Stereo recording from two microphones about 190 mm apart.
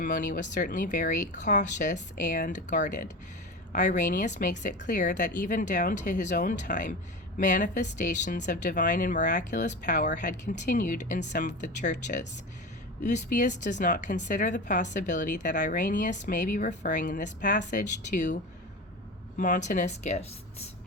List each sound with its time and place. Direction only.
0.0 s speech: 45° left (ahead or behind)
19.4 s speech: 40° left (ahead or behind)